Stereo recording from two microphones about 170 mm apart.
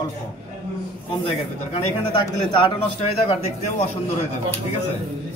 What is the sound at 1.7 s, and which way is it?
A man's voice, 40° left (ahead or behind).